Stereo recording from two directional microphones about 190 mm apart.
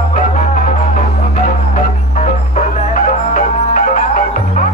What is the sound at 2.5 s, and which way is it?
Music, 40° left (ahead or behind).